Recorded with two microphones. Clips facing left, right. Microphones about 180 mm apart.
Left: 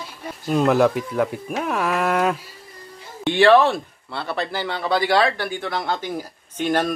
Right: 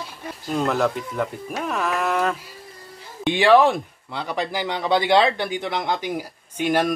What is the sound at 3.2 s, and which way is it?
Speech, 15° right (ahead or behind).